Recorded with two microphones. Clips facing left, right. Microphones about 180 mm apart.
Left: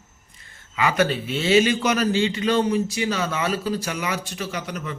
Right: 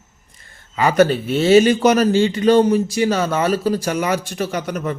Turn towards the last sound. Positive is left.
turn(degrees=-50)  # may be behind; listen again after turning